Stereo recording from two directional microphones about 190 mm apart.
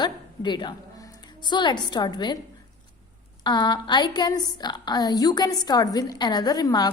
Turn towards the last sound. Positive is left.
turn(degrees=20)  # may be behind; listen again after turning